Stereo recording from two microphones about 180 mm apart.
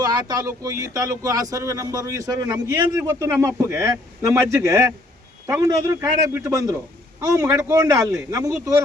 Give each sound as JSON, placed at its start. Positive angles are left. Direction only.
{"t": 0.0, "sound": "a man's voice", "side_deg": -20}